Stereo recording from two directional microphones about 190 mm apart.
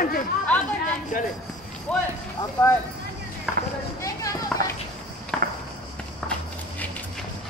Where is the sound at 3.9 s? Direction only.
15° left (ahead or behind).